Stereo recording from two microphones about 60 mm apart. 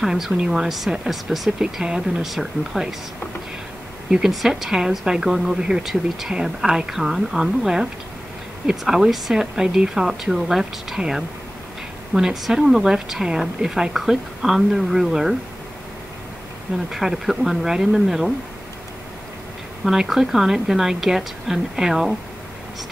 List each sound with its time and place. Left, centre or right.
0.0 s a woman's voice: centre
4.1 s a woman's voice: centre
16.7 s a woman's voice: centre
19.8 s a woman's voice: centre